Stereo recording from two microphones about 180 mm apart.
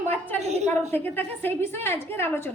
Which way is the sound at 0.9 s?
10° left (ahead or behind).